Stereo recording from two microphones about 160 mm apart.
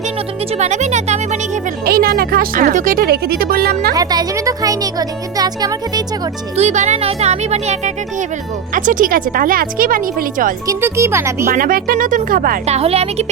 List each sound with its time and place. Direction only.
0.6 s speech: 45° right (ahead or behind)
1.8 s speech: 70° right (ahead or behind)
3.9 s speech: 25° right (ahead or behind)
6.6 s speech: 45° right (ahead or behind)
8.7 s speech: 55° right (ahead or behind)
10.7 s a child's voice: 15° right (ahead or behind)
11.4 s speech: 65° right (ahead or behind)
12.6 s a woman's voice: 40° right (ahead or behind)